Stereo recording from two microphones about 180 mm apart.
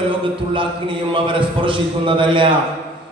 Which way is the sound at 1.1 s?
30° right (ahead or behind).